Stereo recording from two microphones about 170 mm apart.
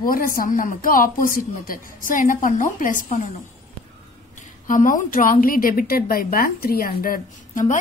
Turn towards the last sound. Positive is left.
turn(degrees=50)  # may be behind; listen again after turning